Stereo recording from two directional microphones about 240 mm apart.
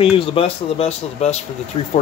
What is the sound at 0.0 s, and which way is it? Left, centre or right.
Speech, left.